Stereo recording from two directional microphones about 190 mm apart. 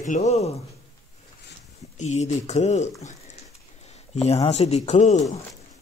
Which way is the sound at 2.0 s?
35° left (ahead or behind).